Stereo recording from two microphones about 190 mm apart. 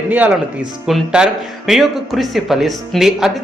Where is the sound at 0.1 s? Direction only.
10° right (ahead or behind).